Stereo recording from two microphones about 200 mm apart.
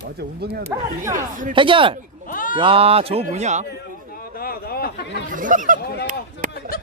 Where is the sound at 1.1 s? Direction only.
40° right (ahead or behind).